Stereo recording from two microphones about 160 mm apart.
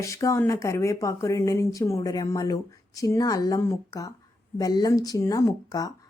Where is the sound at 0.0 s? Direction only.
20° left (ahead or behind).